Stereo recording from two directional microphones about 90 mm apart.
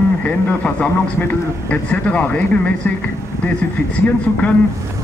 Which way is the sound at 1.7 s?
15° left (ahead or behind).